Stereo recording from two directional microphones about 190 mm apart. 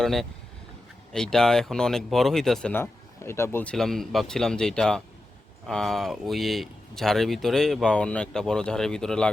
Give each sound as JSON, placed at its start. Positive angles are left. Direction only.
{"t": 0.0, "sound": "speech", "side_deg": 0}